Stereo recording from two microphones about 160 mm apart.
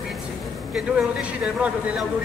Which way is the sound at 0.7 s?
5° right (ahead or behind).